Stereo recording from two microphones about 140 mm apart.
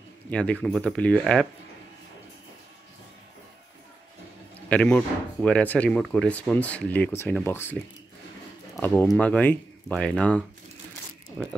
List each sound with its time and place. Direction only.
0.3 s speech: 10° left (ahead or behind)
4.6 s speech: 10° left (ahead or behind)
9.0 s speech: 5° left (ahead or behind)